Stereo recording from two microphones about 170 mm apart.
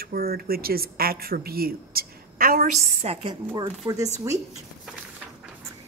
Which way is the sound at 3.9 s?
20° right (ahead or behind).